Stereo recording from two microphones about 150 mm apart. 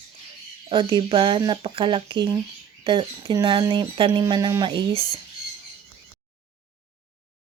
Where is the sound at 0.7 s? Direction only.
30° right (ahead or behind).